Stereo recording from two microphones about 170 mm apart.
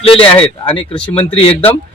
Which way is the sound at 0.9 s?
5° left (ahead or behind).